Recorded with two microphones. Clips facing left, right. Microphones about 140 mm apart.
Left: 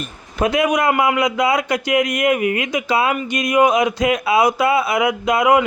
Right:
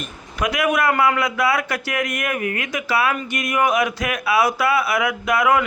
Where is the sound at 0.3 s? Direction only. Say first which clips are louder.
Left 3 dB; 25° left (ahead or behind).